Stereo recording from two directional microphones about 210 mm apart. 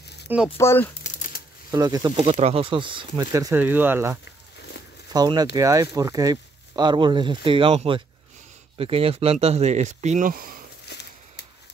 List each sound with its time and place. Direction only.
0.6 s speech: 10° left (ahead or behind)
1.0 s crumpling: 35° left (ahead or behind)
1.7 s speech: 15° right (ahead or behind)
2.2 s speech: 30° right (ahead or behind)
10.9 s a sound: 50° left (ahead or behind)